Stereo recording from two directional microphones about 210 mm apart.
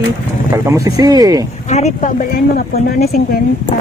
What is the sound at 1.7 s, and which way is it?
Speech, 30° left (ahead or behind).